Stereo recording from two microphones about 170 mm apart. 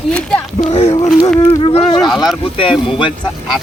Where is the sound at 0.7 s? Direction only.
40° left (ahead or behind).